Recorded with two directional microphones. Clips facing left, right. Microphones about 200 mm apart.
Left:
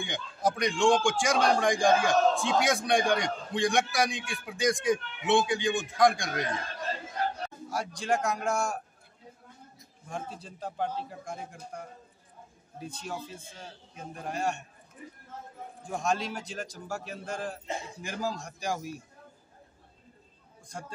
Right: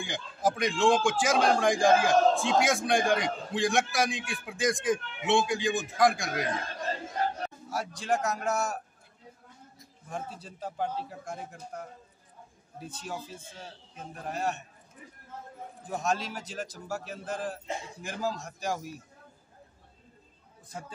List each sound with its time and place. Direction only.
0.0 s a man's voice: centre (ahead or behind)
7.7 s a man's voice: 5° right (ahead or behind)
10.0 s a man's voice: 5° right (ahead or behind)
15.9 s a man's voice: 5° right (ahead or behind)